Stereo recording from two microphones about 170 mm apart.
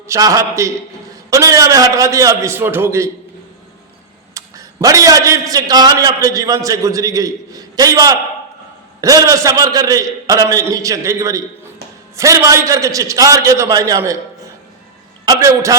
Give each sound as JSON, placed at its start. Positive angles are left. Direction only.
{"t": 0.1, "sound": "a man's voice", "side_deg": -20}
{"t": 4.4, "sound": "a man's voice", "side_deg": -20}
{"t": 15.2, "sound": "a man's voice", "side_deg": -20}